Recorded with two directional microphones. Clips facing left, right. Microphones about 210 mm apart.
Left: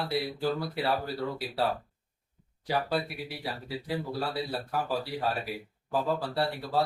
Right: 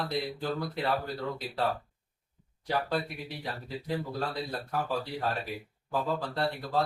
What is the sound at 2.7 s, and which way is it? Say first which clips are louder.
Speech: left 1 dB; 5° left (ahead or behind).